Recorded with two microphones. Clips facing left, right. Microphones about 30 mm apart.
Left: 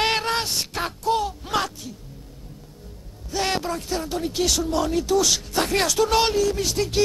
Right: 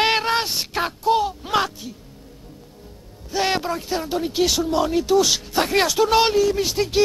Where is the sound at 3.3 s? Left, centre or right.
Centre.